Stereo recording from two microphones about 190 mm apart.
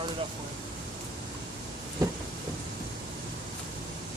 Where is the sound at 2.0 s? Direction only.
15° right (ahead or behind).